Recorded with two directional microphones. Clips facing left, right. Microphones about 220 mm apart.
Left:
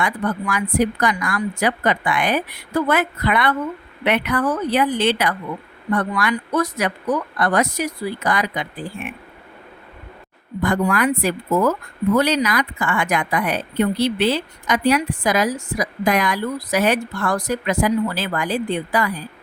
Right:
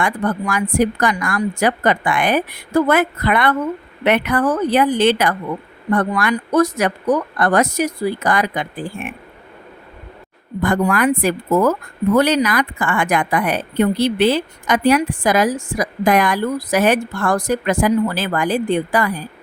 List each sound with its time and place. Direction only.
0.0 s speech: 45° right (ahead or behind)
10.6 s speech: 50° right (ahead or behind)